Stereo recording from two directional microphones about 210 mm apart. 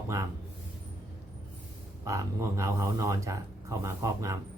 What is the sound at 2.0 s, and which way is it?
Speech, 15° right (ahead or behind).